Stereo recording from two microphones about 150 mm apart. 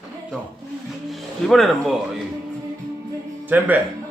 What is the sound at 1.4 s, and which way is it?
Speech, centre (ahead or behind).